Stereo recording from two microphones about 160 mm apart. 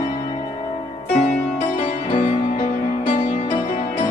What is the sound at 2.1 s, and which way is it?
Music, 35° left (ahead or behind).